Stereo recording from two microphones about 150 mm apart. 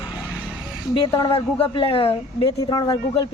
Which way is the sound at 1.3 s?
40° left (ahead or behind).